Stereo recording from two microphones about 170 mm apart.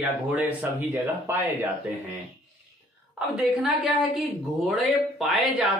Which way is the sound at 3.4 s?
Centre (ahead or behind).